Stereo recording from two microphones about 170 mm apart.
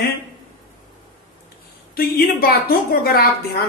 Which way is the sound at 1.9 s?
65° left (ahead or behind).